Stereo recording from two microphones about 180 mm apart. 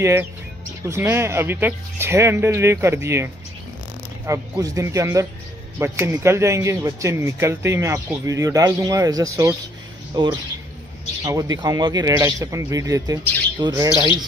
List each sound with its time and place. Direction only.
0.0 s speech: 15° right (ahead or behind)
4.3 s speech: 20° right (ahead or behind)